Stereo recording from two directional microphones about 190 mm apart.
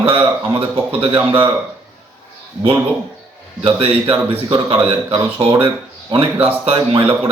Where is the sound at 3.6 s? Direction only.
25° right (ahead or behind).